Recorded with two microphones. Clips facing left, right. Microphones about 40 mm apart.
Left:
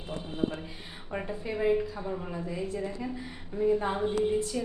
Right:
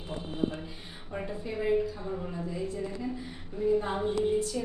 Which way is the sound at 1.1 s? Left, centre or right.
Left.